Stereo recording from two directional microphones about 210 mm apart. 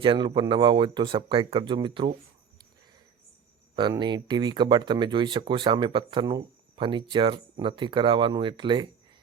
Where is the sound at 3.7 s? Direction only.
20° right (ahead or behind).